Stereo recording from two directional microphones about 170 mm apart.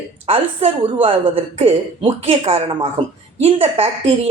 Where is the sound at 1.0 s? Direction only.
30° right (ahead or behind).